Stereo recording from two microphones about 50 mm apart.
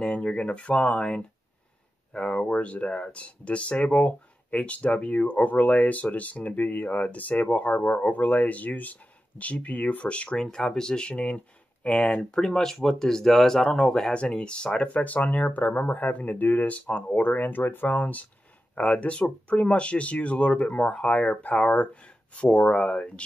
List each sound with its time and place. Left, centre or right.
0.0 s speech: left
12.4 s speech: centre
14.1 s speech: left
16.8 s speech: left
17.9 s speech: left